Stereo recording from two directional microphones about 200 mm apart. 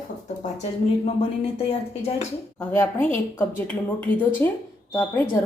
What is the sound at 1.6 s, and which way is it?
Speech, 30° left (ahead or behind).